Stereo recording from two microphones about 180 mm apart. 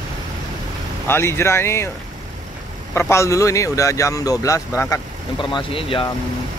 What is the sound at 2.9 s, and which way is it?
A man's voice, 15° left (ahead or behind).